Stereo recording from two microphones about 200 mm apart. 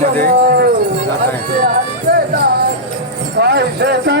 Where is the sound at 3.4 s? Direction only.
55° right (ahead or behind).